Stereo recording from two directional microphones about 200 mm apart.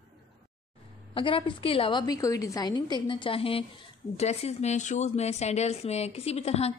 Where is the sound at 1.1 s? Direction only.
25° left (ahead or behind).